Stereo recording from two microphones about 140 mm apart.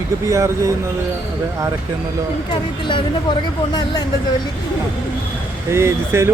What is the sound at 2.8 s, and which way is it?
Speech, 35° left (ahead or behind).